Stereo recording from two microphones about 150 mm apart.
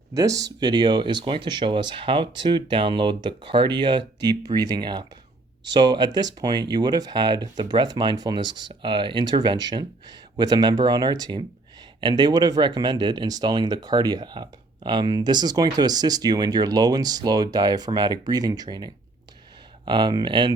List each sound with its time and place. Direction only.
0.1 s speech: 25° right (ahead or behind)